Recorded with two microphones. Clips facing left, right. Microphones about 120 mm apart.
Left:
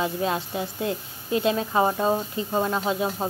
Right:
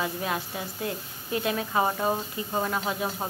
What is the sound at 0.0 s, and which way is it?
A woman's voice, 25° left (ahead or behind).